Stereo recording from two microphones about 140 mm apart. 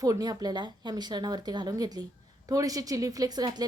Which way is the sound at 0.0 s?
25° right (ahead or behind).